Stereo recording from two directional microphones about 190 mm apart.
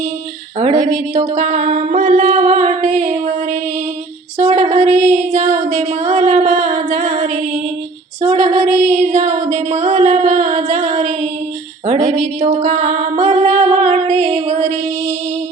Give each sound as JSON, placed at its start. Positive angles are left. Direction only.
{"t": 0.6, "sound": "mantra", "side_deg": -35}
{"t": 4.4, "sound": "a sound", "side_deg": -35}
{"t": 8.2, "sound": "female singing", "side_deg": -35}
{"t": 11.9, "sound": "music", "side_deg": -35}